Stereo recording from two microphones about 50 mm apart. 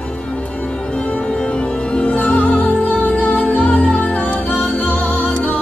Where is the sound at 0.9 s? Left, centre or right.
Left.